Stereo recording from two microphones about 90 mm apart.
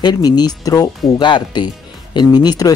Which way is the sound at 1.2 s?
60° left (ahead or behind).